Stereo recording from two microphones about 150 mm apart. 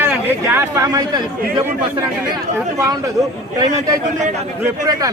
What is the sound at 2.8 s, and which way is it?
A man's voice, 25° right (ahead or behind).